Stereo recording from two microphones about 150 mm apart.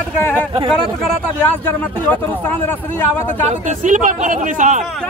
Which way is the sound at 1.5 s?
10° left (ahead or behind).